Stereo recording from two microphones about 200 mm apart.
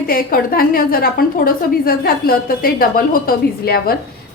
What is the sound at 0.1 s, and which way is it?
A woman's voice, 45° left (ahead or behind).